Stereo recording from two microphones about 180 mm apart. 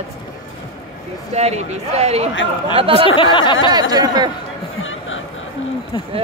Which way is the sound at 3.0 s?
25° left (ahead or behind).